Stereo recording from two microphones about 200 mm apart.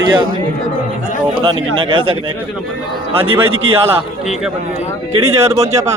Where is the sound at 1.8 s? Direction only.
25° right (ahead or behind).